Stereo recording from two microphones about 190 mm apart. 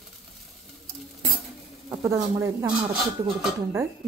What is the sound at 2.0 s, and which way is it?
Speech, 15° right (ahead or behind).